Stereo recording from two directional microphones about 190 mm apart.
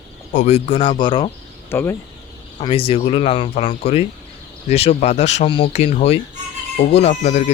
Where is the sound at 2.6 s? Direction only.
30° left (ahead or behind).